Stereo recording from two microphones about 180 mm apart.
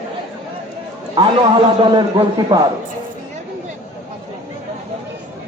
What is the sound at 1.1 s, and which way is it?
A man's voice, 25° right (ahead or behind).